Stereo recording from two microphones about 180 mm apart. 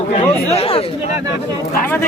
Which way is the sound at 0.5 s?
30° left (ahead or behind).